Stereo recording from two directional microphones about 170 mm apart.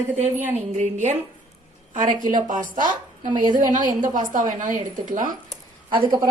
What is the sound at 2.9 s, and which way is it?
Speech, 25° right (ahead or behind).